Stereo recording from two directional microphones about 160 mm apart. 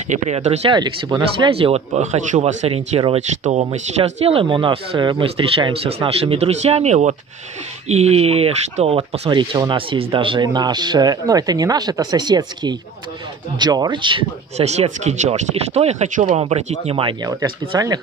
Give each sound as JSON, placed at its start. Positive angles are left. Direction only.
{"t": 0.1, "sound": "speech", "side_deg": -45}
{"t": 0.7, "sound": "speech", "side_deg": -25}
{"t": 14.6, "sound": "speech", "side_deg": -45}